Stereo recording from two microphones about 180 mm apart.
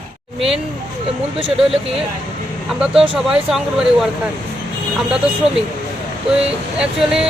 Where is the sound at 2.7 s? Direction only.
5° right (ahead or behind).